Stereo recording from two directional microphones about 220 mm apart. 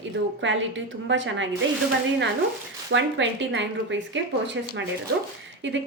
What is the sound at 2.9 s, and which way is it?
Speech, 55° right (ahead or behind).